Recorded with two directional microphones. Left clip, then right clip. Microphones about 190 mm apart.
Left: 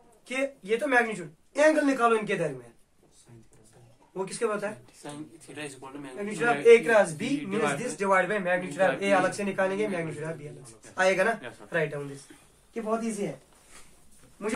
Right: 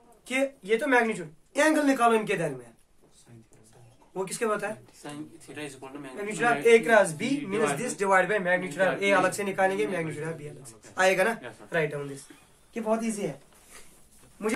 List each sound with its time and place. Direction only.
0.3 s speech: 35° right (ahead or behind)
4.1 s speech: 40° right (ahead or behind)
5.0 s speech: 20° right (ahead or behind)
6.2 s speech: 40° right (ahead or behind)
12.8 s speech: 50° right (ahead or behind)